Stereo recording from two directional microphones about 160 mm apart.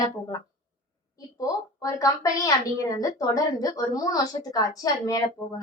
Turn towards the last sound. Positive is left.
turn(degrees=20)  # may be behind; listen again after turning